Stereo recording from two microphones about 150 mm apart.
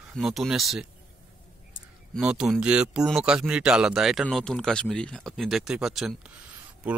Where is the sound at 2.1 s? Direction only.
5° right (ahead or behind).